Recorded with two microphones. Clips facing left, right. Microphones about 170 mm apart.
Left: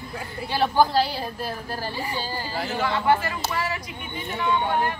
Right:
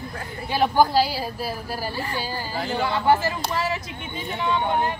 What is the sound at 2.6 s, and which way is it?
Speech, centre (ahead or behind).